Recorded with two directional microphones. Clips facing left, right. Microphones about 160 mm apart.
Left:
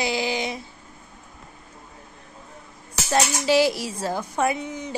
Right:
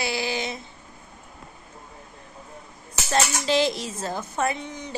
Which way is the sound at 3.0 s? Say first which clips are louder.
Left 2 dB; 10° left (ahead or behind).